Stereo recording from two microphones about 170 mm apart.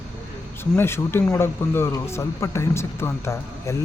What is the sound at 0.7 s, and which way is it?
Speech, 15° left (ahead or behind).